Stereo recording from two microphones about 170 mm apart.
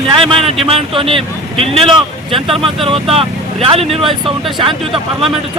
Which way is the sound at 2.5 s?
35° right (ahead or behind).